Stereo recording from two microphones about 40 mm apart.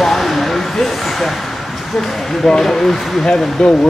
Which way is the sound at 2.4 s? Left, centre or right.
Centre.